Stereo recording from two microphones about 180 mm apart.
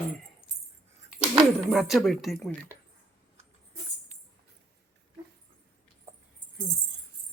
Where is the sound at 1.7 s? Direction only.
Centre (ahead or behind).